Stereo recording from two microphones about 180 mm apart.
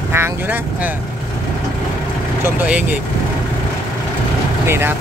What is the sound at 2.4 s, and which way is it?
Speech, 10° right (ahead or behind).